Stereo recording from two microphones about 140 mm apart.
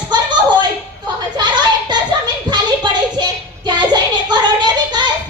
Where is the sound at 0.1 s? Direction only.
35° right (ahead or behind).